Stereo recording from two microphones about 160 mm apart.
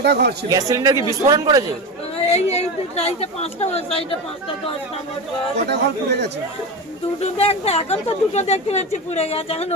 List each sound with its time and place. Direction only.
0.0 s speech: 90° right
0.7 s speech: 20° right (ahead or behind)
2.2 s speech: 45° left (ahead or behind)
5.6 s speech: 90° right
7.2 s speech: 40° left (ahead or behind)